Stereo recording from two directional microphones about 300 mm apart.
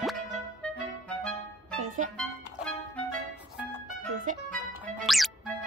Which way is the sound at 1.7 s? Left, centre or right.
Right.